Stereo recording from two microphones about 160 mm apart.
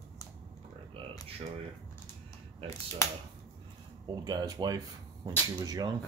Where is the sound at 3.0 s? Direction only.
20° left (ahead or behind).